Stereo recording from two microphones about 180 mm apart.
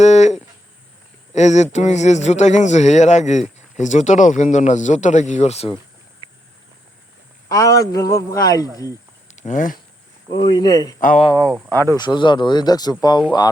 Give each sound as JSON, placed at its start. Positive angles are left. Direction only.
{"t": 0.0, "sound": "a sound", "side_deg": 40}
{"t": 1.3, "sound": "speech", "side_deg": 40}
{"t": 6.2, "sound": "a sound", "side_deg": 30}
{"t": 7.4, "sound": "a man's voice", "side_deg": 20}
{"t": 9.3, "sound": "speech", "side_deg": 40}
{"t": 10.3, "sound": "a man's voice", "side_deg": 25}
{"t": 11.5, "sound": "speech", "side_deg": -10}
{"t": 11.8, "sound": "a man's voice", "side_deg": 20}